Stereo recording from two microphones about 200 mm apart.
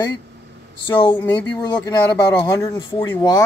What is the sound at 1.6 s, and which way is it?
Speech, 20° left (ahead or behind).